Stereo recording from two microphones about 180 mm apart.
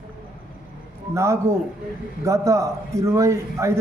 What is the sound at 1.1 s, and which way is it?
A man's voice, 15° right (ahead or behind).